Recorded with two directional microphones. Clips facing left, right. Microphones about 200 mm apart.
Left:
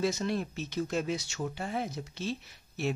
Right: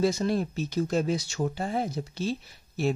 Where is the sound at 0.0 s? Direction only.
35° right (ahead or behind).